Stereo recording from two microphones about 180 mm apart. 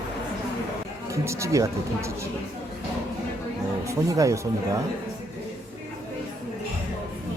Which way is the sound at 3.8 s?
15° right (ahead or behind).